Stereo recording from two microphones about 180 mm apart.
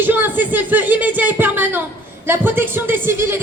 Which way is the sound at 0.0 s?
10° right (ahead or behind).